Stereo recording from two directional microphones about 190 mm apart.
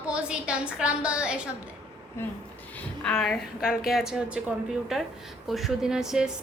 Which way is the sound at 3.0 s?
5° left (ahead or behind).